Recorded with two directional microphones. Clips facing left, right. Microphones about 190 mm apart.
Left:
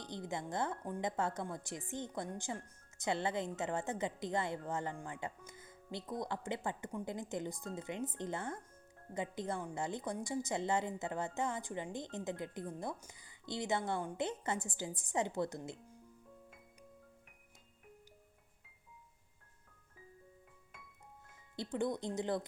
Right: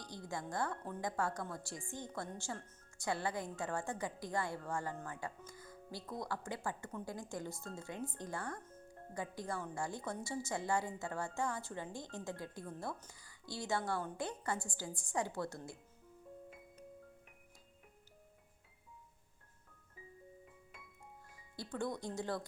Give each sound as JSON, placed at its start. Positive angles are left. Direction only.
{"t": 0.0, "sound": "speech", "side_deg": 20}
{"t": 21.5, "sound": "speech", "side_deg": 20}